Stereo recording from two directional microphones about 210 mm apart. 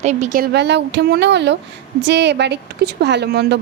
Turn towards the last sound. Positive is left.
turn(degrees=-50)  # may be behind; listen again after turning